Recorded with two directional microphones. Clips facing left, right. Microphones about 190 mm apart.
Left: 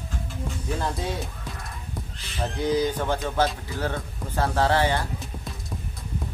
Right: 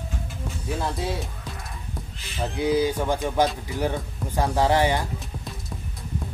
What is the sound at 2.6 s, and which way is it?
Speech, 10° right (ahead or behind).